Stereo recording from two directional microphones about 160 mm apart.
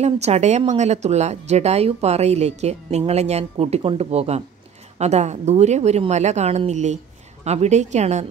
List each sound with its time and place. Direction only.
0.0 s speech: 45° right (ahead or behind)